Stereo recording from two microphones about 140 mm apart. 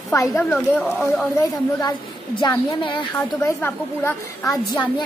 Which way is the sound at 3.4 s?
15° left (ahead or behind).